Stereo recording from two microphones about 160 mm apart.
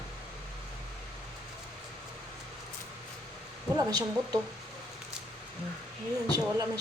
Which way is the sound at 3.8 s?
25° right (ahead or behind).